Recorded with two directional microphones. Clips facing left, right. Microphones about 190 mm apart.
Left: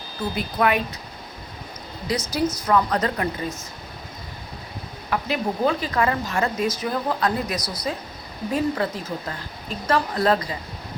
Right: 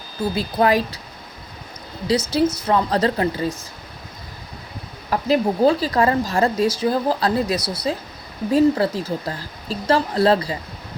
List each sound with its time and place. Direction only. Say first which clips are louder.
0.3 s speech: right 4 dB; 30° right (ahead or behind)
2.0 s speech: right 5 dB; 25° right (ahead or behind)
5.1 s speech: right 6 dB; 35° right (ahead or behind)